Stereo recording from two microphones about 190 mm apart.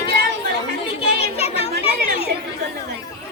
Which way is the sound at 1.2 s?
30° left (ahead or behind).